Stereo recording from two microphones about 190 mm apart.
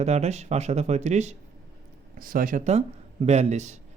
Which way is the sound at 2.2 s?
45° right (ahead or behind).